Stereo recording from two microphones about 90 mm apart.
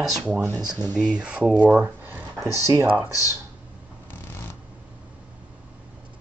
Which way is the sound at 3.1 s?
35° left (ahead or behind).